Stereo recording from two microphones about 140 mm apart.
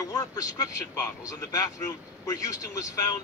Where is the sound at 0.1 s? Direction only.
25° left (ahead or behind).